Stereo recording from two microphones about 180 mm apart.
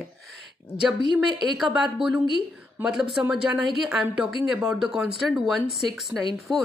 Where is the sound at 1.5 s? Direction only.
5° right (ahead or behind).